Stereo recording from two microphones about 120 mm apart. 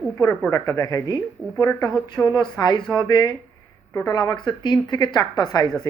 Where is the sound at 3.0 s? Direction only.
35° left (ahead or behind).